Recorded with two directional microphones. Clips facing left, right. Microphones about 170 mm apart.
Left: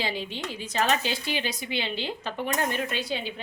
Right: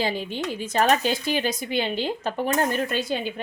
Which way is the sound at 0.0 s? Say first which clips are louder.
Right 5 dB; 45° right (ahead or behind).